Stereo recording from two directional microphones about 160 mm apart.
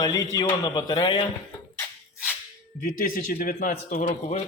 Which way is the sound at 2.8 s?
60° left (ahead or behind).